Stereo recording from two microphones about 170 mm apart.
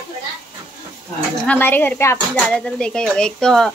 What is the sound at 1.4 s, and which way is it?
A woman's voice, 10° left (ahead or behind).